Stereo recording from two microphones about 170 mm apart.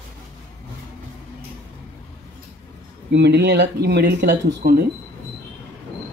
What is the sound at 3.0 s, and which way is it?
Speech, 85° right.